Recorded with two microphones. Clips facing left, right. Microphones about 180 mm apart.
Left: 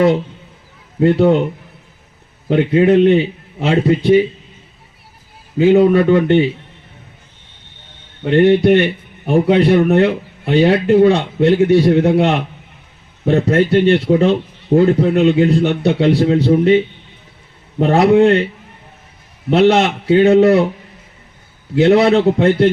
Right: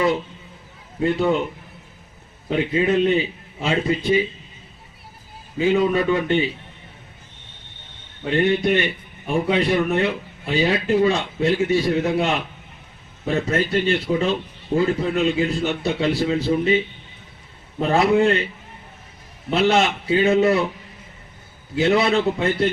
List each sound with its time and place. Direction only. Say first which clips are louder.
0.9 s a man's voice: left 8 dB; 65° left (ahead or behind)
2.5 s a man's voice: left 8 dB; 65° left (ahead or behind)
5.5 s a man's voice: left 8 dB; 65° left (ahead or behind)
8.3 s a man's voice: left 9 dB; 65° left (ahead or behind)
19.5 s a man's voice: left 7 dB; 65° left (ahead or behind)
21.8 s a man's voice: left 7 dB; 65° left (ahead or behind)